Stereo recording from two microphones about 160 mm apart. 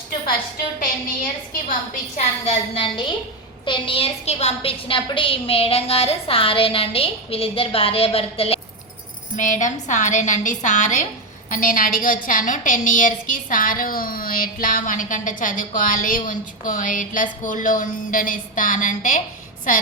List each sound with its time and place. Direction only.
2.1 s a woman's voice: 40° left (ahead or behind)
9.3 s a woman's voice: 50° left (ahead or behind)